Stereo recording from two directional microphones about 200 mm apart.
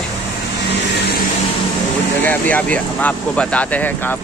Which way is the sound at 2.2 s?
10° left (ahead or behind).